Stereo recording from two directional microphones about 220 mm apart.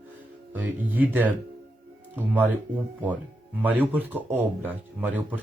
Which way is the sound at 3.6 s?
5° right (ahead or behind).